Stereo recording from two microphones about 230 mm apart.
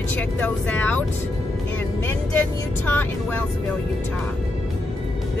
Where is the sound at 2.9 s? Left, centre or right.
Centre.